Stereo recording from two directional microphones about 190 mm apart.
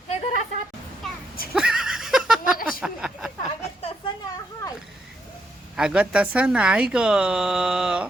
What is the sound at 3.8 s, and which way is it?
Speech, 30° left (ahead or behind).